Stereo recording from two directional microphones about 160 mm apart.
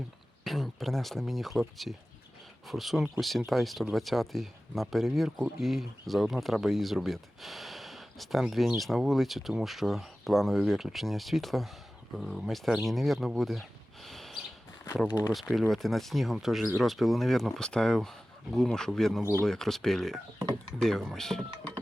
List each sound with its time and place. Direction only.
0.4 s speech: centre (ahead or behind)
15.0 s speech: 20° left (ahead or behind)
15.5 s speech: centre (ahead or behind)